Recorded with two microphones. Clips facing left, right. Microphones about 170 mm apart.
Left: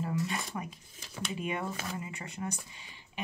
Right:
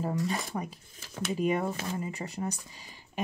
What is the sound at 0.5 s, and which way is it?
Speech, 30° right (ahead or behind).